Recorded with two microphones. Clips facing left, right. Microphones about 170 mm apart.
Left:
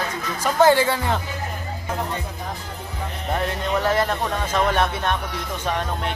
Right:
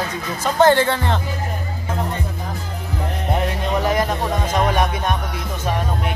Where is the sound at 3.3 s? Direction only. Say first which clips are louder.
Right 1 dB; 15° right (ahead or behind).